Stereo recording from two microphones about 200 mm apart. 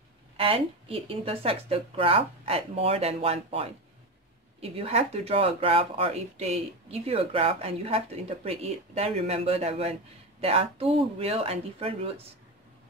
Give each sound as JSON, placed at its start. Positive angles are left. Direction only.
{"t": 0.4, "sound": "speech", "side_deg": -30}